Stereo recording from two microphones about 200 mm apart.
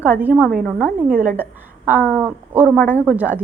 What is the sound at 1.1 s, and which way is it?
Speech, 40° right (ahead or behind).